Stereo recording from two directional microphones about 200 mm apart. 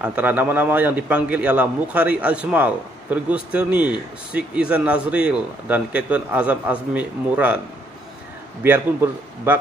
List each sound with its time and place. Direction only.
0.0 s a man's voice: 10° right (ahead or behind)
8.6 s a man's voice: 10° right (ahead or behind)